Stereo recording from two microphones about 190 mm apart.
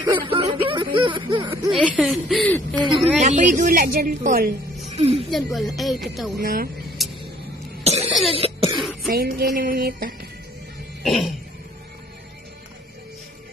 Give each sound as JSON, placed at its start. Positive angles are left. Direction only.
{"t": 0.0, "sound": "a sound", "side_deg": -25}
{"t": 1.7, "sound": "speech", "side_deg": -5}
{"t": 2.7, "sound": "a woman's voice", "side_deg": -25}
{"t": 3.2, "sound": "a woman's voice", "side_deg": -40}
{"t": 4.9, "sound": "a woman's voice", "side_deg": -35}
{"t": 5.3, "sound": "speech", "side_deg": 0}
{"t": 6.3, "sound": "a woman's voice", "side_deg": -50}
{"t": 7.0, "sound": "vehicle", "side_deg": 0}
{"t": 7.8, "sound": "cough", "side_deg": -35}
{"t": 9.0, "sound": "a woman's voice", "side_deg": -50}
{"t": 11.1, "sound": "speech", "side_deg": 0}